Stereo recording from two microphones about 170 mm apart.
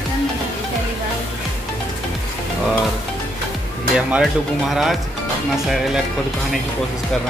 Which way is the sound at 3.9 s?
5° right (ahead or behind).